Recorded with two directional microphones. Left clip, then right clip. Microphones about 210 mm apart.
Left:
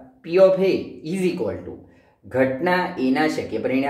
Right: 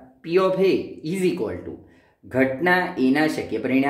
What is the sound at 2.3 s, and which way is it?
Speech, 50° right (ahead or behind).